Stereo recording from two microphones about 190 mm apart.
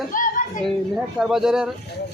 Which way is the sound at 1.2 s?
5° right (ahead or behind).